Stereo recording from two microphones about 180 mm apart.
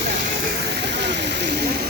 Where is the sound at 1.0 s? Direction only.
70° right (ahead or behind).